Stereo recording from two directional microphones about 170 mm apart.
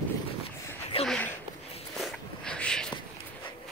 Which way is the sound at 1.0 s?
5° left (ahead or behind).